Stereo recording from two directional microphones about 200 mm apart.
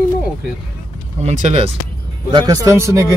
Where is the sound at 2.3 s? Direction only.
20° right (ahead or behind).